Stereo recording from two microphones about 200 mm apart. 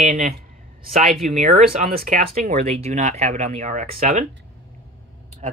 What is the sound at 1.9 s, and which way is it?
Speech, 50° right (ahead or behind).